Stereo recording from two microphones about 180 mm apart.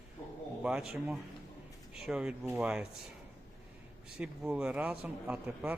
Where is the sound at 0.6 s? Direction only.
5° right (ahead or behind).